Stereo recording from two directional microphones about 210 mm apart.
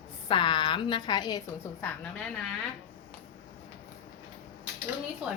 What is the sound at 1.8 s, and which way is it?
Speech, 5° left (ahead or behind).